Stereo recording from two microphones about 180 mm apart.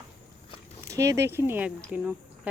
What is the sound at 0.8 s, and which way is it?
Speech, 15° right (ahead or behind).